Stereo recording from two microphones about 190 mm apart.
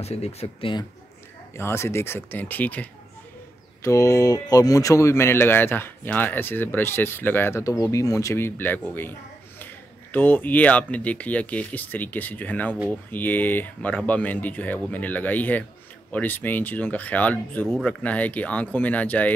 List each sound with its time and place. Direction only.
0.0 s speech: 35° left (ahead or behind)
1.6 s speech: 15° left (ahead or behind)
10.1 s speech: 10° left (ahead or behind)